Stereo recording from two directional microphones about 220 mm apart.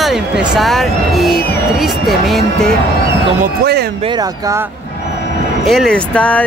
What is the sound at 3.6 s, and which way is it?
Speech, 45° right (ahead or behind).